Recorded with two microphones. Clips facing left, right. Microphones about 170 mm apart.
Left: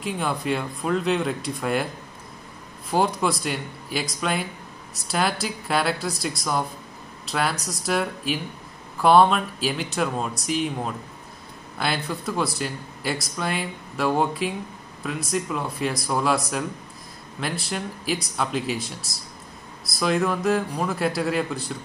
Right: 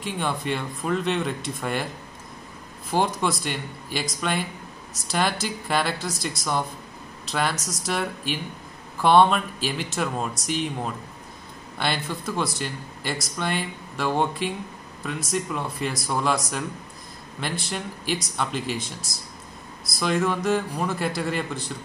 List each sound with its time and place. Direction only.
0.0 s speech: centre (ahead or behind)
2.9 s speech: centre (ahead or behind)
11.8 s speech: centre (ahead or behind)